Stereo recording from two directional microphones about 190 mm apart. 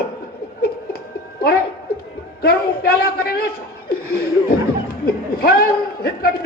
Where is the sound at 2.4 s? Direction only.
55° left (ahead or behind).